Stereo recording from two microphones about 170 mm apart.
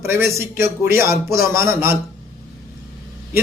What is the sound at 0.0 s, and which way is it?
A man's voice, 15° right (ahead or behind).